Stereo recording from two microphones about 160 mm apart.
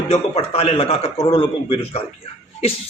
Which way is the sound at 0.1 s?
40° left (ahead or behind).